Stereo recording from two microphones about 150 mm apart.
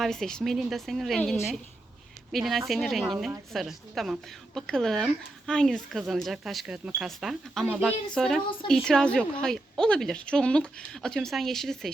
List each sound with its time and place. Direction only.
0.0 s a woman's voice: 5° left (ahead or behind)